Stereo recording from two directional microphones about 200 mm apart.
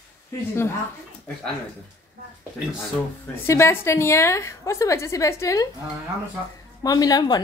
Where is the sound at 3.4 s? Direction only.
15° left (ahead or behind).